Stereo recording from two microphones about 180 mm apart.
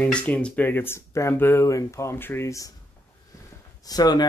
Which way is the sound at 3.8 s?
20° left (ahead or behind).